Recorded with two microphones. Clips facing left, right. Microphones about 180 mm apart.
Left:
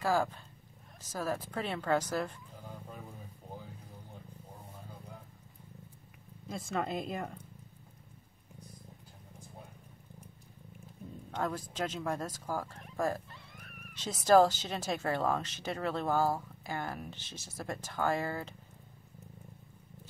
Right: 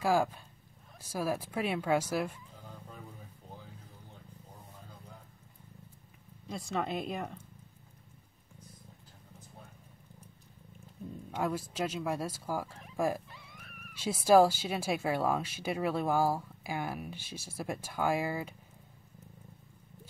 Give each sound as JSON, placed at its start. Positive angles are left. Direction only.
{"t": 0.0, "sound": "speech", "side_deg": -10}
{"t": 6.5, "sound": "a woman's voice", "side_deg": 0}
{"t": 11.3, "sound": "speech", "side_deg": -10}